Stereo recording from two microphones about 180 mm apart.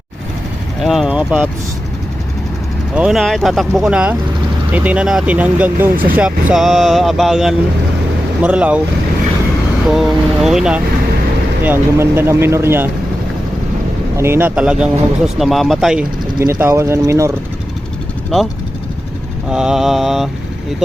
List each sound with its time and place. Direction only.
0.8 s speech: centre (ahead or behind)
2.9 s speech: 5° right (ahead or behind)
9.9 s speech: centre (ahead or behind)
14.2 s speech: 15° right (ahead or behind)
16.4 s speech: 15° right (ahead or behind)
19.5 s speech: 5° right (ahead or behind)